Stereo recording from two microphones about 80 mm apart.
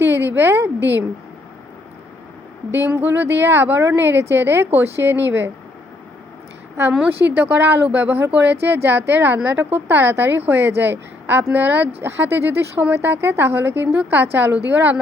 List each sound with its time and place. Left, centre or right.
0.2 s speech: right
2.7 s speech: right
7.0 s speech: right